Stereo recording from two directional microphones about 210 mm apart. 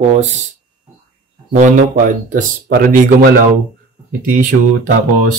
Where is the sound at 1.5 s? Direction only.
35° right (ahead or behind).